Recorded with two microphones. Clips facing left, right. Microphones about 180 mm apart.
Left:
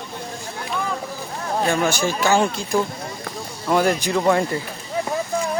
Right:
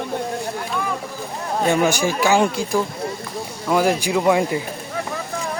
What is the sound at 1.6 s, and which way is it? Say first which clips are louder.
Speech: right 3 dB; 15° right (ahead or behind).